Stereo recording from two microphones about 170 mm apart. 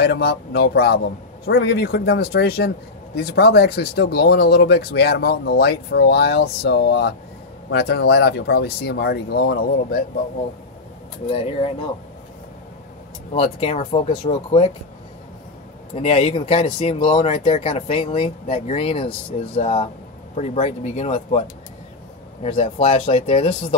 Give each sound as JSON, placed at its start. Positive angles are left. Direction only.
{"t": 0.0, "sound": "speech", "side_deg": 70}
{"t": 11.2, "sound": "speech", "side_deg": 35}
{"t": 13.3, "sound": "speech", "side_deg": 35}
{"t": 15.9, "sound": "speech", "side_deg": 35}